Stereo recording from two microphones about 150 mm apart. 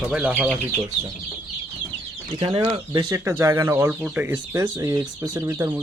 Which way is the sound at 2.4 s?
35° right (ahead or behind).